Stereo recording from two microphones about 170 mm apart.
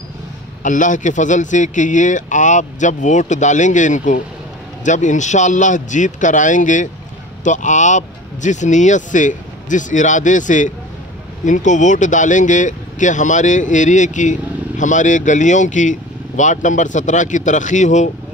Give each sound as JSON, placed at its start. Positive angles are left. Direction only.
{"t": 0.7, "sound": "speech", "side_deg": 50}